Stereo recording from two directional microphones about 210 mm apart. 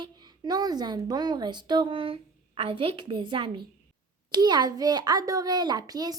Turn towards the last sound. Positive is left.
turn(degrees=-20)  # may be behind; listen again after turning